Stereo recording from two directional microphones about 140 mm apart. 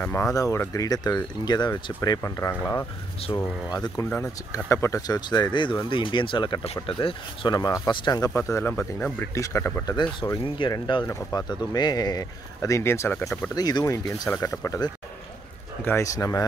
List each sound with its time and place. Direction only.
0.0 s speech: 15° left (ahead or behind)
10.7 s speech: 35° left (ahead or behind)